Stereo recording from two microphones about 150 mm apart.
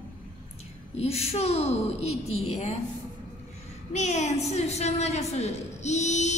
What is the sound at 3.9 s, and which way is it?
A woman's voice, 50° left (ahead or behind).